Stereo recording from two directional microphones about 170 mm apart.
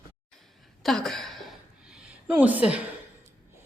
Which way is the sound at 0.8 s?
Centre (ahead or behind).